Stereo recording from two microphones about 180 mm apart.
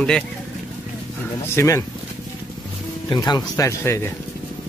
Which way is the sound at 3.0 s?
20° left (ahead or behind).